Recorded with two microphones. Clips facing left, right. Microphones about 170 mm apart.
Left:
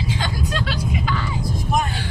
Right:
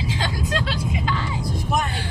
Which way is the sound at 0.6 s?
25° right (ahead or behind).